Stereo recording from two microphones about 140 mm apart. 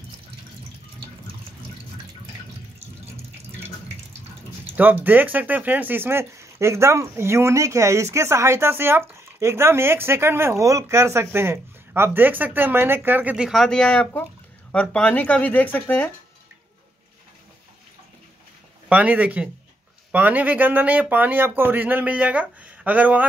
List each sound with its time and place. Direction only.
4.7 s speech: 15° right (ahead or behind); by 16.1 s 15° left (ahead or behind)
18.9 s speech: 10° right (ahead or behind)